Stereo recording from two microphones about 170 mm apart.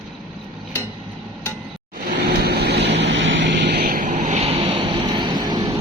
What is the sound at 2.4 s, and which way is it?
Vehicle, 70° right (ahead or behind).